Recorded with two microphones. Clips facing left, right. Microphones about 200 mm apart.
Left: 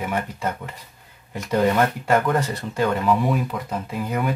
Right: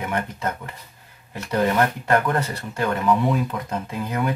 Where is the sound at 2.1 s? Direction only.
20° left (ahead or behind).